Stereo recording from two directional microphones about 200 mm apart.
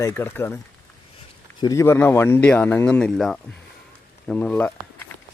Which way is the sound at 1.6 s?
15° left (ahead or behind).